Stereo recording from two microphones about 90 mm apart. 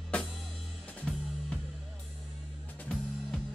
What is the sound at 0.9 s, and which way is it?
Music, 10° left (ahead or behind).